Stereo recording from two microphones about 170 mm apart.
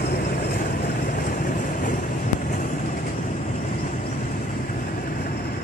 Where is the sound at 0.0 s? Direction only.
65° left (ahead or behind).